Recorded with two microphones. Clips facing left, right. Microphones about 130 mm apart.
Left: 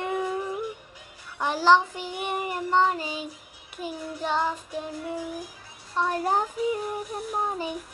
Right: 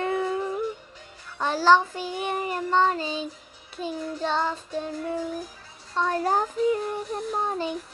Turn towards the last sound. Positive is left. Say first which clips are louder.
# right 1 dB
turn(degrees=10)  # may be behind; listen again after turning